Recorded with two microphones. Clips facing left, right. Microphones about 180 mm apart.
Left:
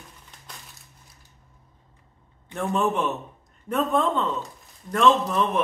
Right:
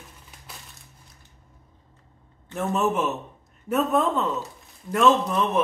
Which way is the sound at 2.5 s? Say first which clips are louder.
Even; 5° right (ahead or behind).